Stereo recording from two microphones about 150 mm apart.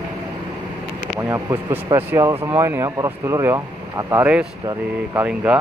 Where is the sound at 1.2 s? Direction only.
15° right (ahead or behind).